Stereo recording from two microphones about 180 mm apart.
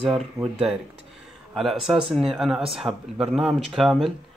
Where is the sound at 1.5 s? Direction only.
Centre (ahead or behind).